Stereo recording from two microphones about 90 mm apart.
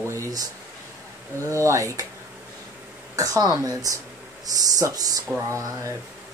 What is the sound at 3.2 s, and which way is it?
Speech, 40° right (ahead or behind).